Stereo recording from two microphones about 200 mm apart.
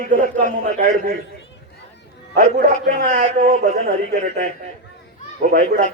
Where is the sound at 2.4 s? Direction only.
45° right (ahead or behind).